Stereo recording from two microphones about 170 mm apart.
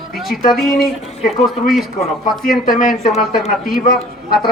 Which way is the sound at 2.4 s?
60° left (ahead or behind).